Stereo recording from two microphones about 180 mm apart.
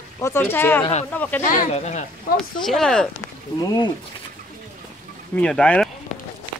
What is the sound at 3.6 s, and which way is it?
Speech, 25° left (ahead or behind).